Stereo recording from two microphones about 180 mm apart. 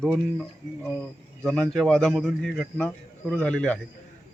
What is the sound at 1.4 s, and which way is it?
Speech, 5° left (ahead or behind).